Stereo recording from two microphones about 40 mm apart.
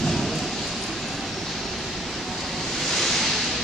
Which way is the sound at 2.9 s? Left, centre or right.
Centre.